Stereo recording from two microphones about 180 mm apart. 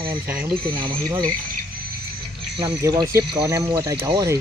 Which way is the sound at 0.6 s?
25° right (ahead or behind).